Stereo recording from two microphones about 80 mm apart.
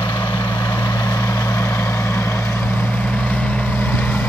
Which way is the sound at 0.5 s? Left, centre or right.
Left.